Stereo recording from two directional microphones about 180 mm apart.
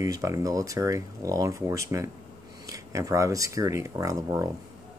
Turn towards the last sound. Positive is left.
turn(degrees=-20)  # may be behind; listen again after turning